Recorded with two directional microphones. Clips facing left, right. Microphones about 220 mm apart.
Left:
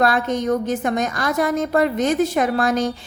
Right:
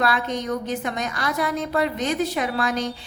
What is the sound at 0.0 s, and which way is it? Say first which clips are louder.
A woman's voice: left 5 dB; 45° left (ahead or behind).